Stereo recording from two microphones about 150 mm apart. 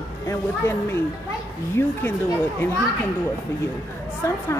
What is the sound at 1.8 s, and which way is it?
Speech, 15° left (ahead or behind).